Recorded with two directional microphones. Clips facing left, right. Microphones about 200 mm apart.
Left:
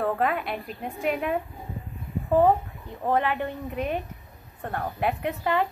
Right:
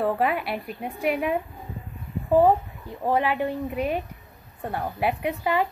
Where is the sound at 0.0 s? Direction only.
5° right (ahead or behind).